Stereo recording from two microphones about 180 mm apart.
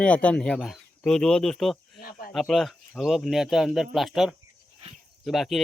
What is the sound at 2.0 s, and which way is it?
Speech, 55° left (ahead or behind).